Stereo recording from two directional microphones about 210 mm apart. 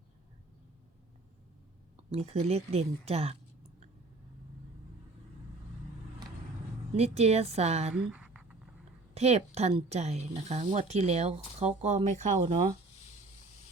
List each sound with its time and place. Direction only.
2.0 s speech: 30° right (ahead or behind)
6.9 s speech: 30° right (ahead or behind)
7.9 s a sound: 5° right (ahead or behind)
9.1 s speech: 30° right (ahead or behind)